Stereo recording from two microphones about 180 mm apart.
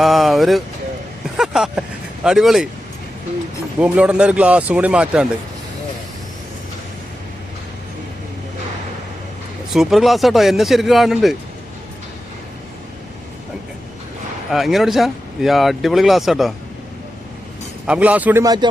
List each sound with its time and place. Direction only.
0.0 s a sound: centre (ahead or behind)
1.4 s speech: 5° right (ahead or behind)
3.8 s speech: 5° right (ahead or behind)
9.7 s speech: centre (ahead or behind)
14.5 s speech: centre (ahead or behind)
17.8 s a man's voice: 5° right (ahead or behind)
18.4 s speech: 20° right (ahead or behind)